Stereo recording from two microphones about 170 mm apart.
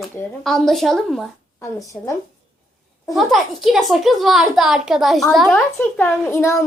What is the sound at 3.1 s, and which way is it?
A child's voice, centre (ahead or behind).